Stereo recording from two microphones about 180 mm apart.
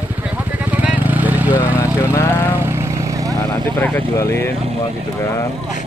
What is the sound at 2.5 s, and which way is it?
Vehicle, 15° right (ahead or behind).